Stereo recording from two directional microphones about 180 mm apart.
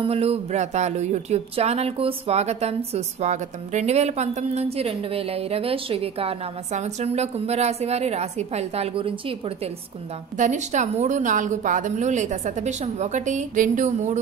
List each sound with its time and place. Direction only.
0.0 s speech: 35° right (ahead or behind)
10.3 s speech: 45° right (ahead or behind)